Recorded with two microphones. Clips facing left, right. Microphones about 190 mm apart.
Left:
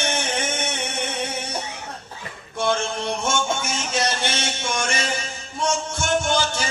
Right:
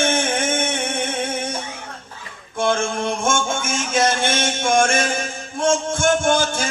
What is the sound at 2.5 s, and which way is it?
Music, 50° right (ahead or behind).